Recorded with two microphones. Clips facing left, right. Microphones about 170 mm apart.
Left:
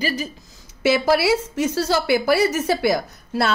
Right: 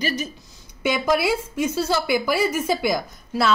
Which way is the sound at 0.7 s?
90° left.